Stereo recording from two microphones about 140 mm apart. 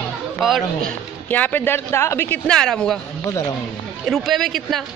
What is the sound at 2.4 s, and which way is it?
Speech, 5° left (ahead or behind).